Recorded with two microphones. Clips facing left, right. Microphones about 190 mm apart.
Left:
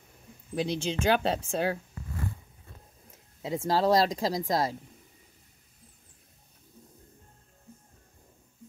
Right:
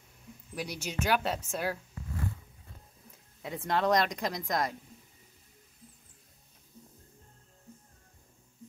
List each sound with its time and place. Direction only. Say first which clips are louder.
0.6 s speech: left 6 dB; 25° left (ahead or behind)
3.4 s speech: left 4 dB; 30° left (ahead or behind)